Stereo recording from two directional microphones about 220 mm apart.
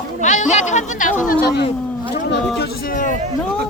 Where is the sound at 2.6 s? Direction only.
40° left (ahead or behind).